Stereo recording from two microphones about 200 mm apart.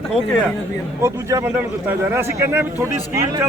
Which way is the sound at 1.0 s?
15° right (ahead or behind).